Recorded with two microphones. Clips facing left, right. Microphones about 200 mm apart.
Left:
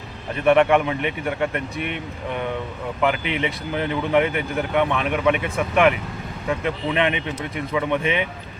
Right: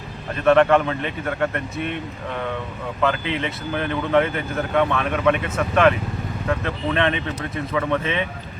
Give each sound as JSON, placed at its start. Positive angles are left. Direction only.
{"t": 0.3, "sound": "speech", "side_deg": 15}